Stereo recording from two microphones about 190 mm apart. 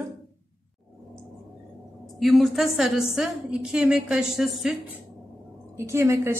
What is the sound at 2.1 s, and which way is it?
A woman's voice, centre (ahead or behind).